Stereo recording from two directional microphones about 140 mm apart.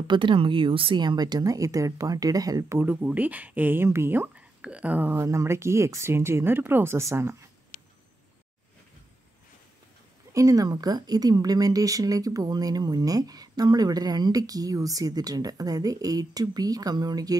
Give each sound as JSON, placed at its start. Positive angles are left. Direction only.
{"t": 0.0, "sound": "speech", "side_deg": -35}
{"t": 10.3, "sound": "speech", "side_deg": -25}